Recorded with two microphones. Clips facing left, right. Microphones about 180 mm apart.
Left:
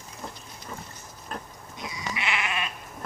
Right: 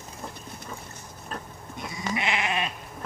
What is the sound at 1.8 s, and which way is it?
Goat, 55° right (ahead or behind).